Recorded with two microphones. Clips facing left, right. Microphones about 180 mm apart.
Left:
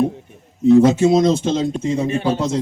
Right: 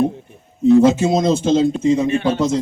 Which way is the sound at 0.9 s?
60° left (ahead or behind).